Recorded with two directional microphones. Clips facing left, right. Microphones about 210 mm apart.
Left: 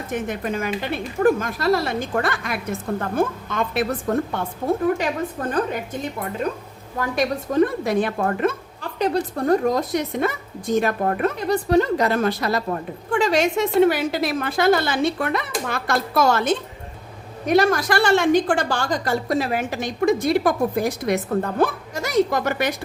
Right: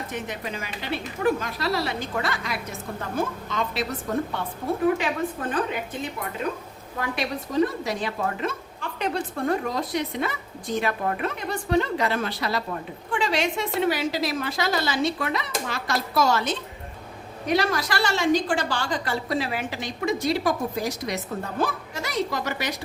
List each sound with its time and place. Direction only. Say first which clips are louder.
0.1 s speech: left 7 dB; 50° left (ahead or behind)
4.9 s a woman's voice: left 2 dB; 40° left (ahead or behind)
7.0 s speech: left 6 dB; 50° left (ahead or behind)
8.8 s speech: left 6 dB; 35° left (ahead or behind); by 22.7 s 55° left (ahead or behind)